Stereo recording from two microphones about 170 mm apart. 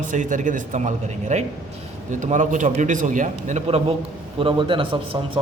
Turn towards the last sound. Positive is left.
turn(degrees=-30)  # may be behind; listen again after turning